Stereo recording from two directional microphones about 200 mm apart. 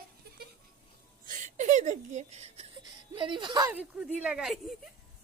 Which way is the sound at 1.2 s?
40° right (ahead or behind).